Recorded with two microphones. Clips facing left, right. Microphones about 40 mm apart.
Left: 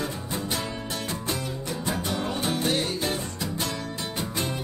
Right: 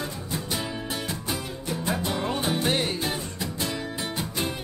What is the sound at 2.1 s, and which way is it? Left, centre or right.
Music, right.